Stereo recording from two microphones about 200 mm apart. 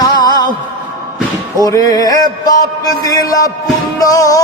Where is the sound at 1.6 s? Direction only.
15° left (ahead or behind).